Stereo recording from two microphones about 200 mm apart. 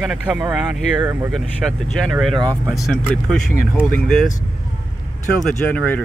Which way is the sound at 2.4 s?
20° right (ahead or behind).